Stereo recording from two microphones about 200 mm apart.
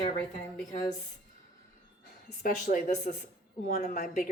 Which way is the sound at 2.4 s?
45° left (ahead or behind).